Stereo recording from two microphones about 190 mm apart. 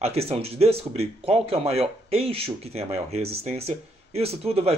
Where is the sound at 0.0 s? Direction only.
30° right (ahead or behind).